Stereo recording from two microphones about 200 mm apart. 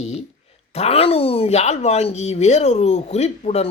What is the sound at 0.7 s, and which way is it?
Speech, 30° left (ahead or behind).